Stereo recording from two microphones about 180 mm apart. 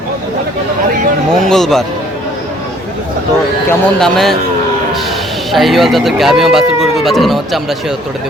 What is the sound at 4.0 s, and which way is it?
Speech, centre (ahead or behind).